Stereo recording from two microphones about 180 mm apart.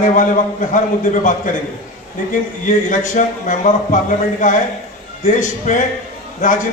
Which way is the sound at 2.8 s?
45° left (ahead or behind).